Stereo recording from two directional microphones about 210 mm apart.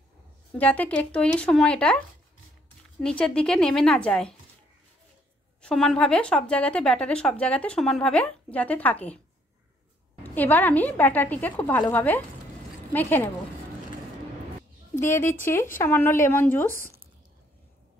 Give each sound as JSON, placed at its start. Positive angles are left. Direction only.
{"t": 0.6, "sound": "speech", "side_deg": 5}
{"t": 5.6, "sound": "speech", "side_deg": 5}
{"t": 10.2, "sound": "a woman's voice", "side_deg": 10}
{"t": 15.0, "sound": "a woman's voice", "side_deg": 10}
{"t": 16.7, "sound": "a sound", "side_deg": -40}